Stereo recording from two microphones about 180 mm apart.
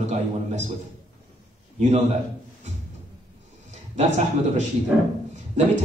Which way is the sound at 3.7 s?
40° right (ahead or behind).